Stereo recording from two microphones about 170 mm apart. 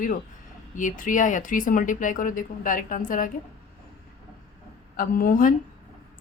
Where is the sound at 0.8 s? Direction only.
50° left (ahead or behind).